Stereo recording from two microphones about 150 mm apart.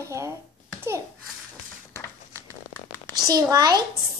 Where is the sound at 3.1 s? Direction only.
25° right (ahead or behind).